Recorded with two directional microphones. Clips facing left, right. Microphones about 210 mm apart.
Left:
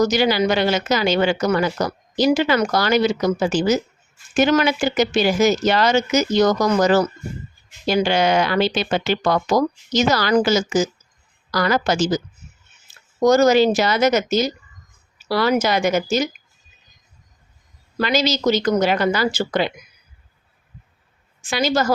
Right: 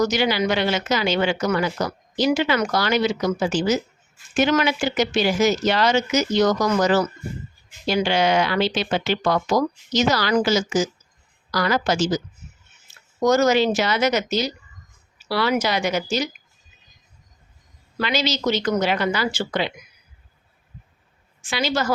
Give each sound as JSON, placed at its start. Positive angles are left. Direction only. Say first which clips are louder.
{"t": 0.0, "sound": "speech", "louder": "left 3 dB", "side_deg": 40}
{"t": 13.1, "sound": "speech", "louder": "left 4 dB", "side_deg": 35}
{"t": 18.0, "sound": "speech", "louder": "left 4 dB", "side_deg": 45}
{"t": 21.4, "sound": "speech", "louder": "left 4 dB", "side_deg": 45}